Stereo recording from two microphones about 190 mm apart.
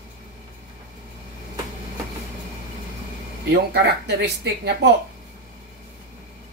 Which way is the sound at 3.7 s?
60° right (ahead or behind).